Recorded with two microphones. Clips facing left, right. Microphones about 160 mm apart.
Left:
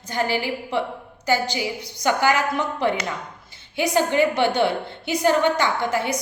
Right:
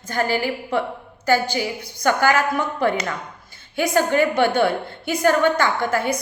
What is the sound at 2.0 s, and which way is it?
A woman's voice, 15° left (ahead or behind).